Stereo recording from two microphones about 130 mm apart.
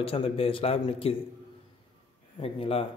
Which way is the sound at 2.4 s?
45° left (ahead or behind).